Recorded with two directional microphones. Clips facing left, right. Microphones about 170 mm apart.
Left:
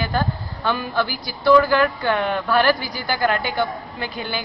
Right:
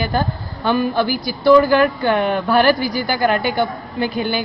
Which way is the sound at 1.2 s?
15° right (ahead or behind).